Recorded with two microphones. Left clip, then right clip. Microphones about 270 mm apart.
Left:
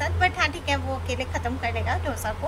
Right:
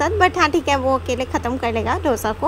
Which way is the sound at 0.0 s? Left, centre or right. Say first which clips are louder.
Right 7 dB; centre.